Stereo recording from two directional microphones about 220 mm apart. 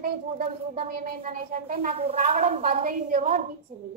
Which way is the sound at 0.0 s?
40° right (ahead or behind).